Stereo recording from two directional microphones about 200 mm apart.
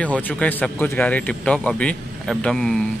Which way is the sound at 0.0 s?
5° left (ahead or behind).